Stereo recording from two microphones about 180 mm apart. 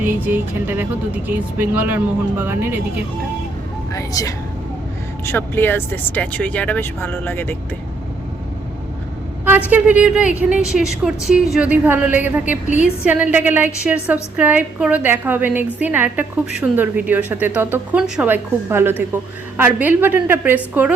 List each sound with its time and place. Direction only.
0.0 s a woman's voice: 10° right (ahead or behind)
3.9 s speech: 20° left (ahead or behind)
9.4 s a woman's voice: 10° right (ahead or behind)
12.6 s a woman's voice: 45° left (ahead or behind)
13.1 s a woman's voice: 10° right (ahead or behind)